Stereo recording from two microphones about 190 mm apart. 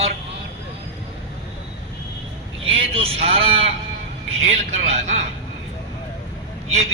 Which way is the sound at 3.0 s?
30° right (ahead or behind).